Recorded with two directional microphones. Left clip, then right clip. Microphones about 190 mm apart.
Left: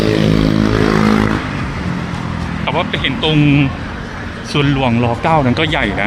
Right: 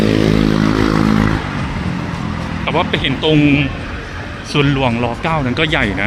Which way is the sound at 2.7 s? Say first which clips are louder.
Right 1 dB; centre (ahead or behind).